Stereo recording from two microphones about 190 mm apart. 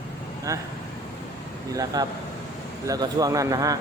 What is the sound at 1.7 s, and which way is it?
Speech, 20° right (ahead or behind).